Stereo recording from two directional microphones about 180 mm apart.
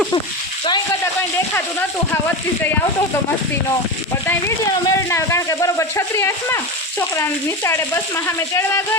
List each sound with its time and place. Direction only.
4.3 s speech: 15° left (ahead or behind)